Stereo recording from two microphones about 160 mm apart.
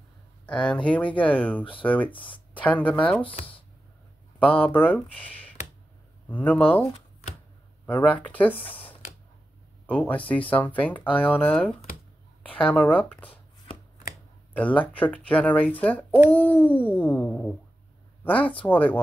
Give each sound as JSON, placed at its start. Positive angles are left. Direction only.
{"t": 0.5, "sound": "speech", "side_deg": 5}
{"t": 2.1, "sound": "speech", "side_deg": 30}
{"t": 2.5, "sound": "speech", "side_deg": 10}
{"t": 3.2, "sound": "speech", "side_deg": 35}
{"t": 4.4, "sound": "speech", "side_deg": 10}
{"t": 9.8, "sound": "speech", "side_deg": 10}
{"t": 14.5, "sound": "speech", "side_deg": 10}